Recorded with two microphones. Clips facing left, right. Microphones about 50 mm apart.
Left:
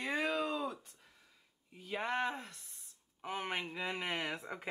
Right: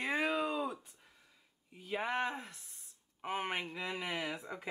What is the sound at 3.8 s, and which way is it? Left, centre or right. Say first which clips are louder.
Speech: left 1 dB; centre.